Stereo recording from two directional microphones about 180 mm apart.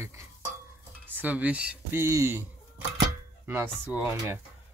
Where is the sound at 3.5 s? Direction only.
10° right (ahead or behind).